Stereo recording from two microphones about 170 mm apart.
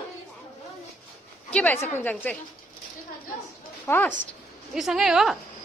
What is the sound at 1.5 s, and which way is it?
Speech, 10° left (ahead or behind).